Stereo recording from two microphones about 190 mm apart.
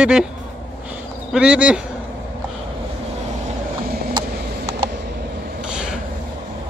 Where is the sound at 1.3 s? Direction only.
5° right (ahead or behind).